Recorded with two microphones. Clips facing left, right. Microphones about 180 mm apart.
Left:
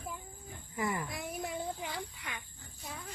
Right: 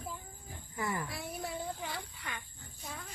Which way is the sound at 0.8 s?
20° left (ahead or behind).